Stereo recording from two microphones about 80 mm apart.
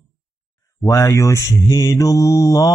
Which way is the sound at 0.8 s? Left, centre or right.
Left.